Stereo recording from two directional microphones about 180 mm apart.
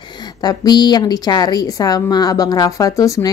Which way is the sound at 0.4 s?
20° left (ahead or behind).